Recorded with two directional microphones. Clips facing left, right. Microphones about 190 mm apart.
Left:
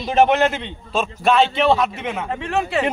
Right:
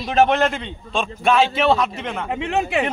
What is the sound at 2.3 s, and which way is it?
Speech, 15° right (ahead or behind).